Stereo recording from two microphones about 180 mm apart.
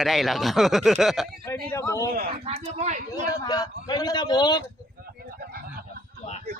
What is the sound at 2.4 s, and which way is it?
Speech, 30° right (ahead or behind).